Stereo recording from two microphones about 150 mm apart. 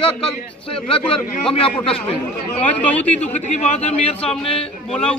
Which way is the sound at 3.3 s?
45° left (ahead or behind).